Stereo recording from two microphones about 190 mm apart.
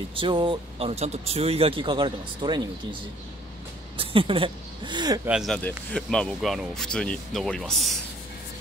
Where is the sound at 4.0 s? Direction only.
30° right (ahead or behind).